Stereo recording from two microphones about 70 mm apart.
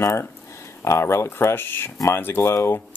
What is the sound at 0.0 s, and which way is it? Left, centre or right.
Speech, left.